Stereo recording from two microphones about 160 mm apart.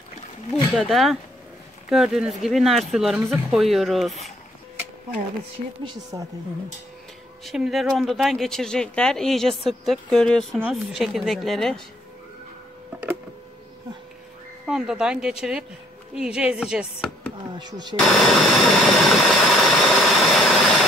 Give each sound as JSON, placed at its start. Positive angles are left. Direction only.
{"t": 0.7, "sound": "speech", "side_deg": 0}
{"t": 6.1, "sound": "speech", "side_deg": -30}
{"t": 7.4, "sound": "speech", "side_deg": 0}
{"t": 14.7, "sound": "speech", "side_deg": -5}
{"t": 17.6, "sound": "speech", "side_deg": -25}
{"t": 17.9, "sound": "engine", "side_deg": 0}